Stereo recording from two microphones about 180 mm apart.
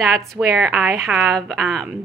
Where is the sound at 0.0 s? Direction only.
Centre (ahead or behind).